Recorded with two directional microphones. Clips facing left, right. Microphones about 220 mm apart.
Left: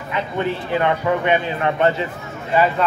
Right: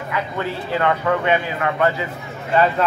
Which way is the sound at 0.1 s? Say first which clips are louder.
Left 3 dB; 20° left (ahead or behind).